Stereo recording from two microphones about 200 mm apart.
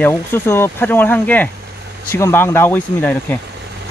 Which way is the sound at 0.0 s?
10° left (ahead or behind).